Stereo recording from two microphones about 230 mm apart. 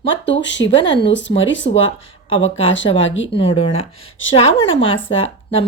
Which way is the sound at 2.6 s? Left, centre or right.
Left.